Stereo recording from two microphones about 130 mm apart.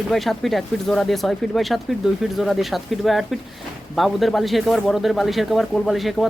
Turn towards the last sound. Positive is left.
turn(degrees=0)  # may be behind; listen again after turning